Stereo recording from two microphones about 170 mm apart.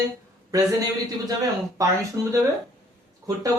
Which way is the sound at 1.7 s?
20° right (ahead or behind).